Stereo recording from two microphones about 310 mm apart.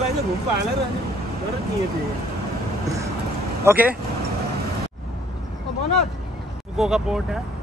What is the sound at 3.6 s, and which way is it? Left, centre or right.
Speech, centre.